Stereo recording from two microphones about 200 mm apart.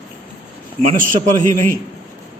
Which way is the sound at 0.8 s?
40° right (ahead or behind).